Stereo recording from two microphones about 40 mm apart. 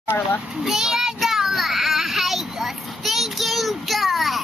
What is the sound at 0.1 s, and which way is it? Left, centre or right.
Speech, left.